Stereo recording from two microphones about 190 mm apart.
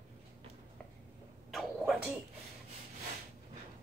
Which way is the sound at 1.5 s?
Centre (ahead or behind).